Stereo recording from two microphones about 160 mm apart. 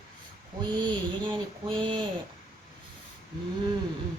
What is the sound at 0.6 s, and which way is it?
Speech, 25° right (ahead or behind).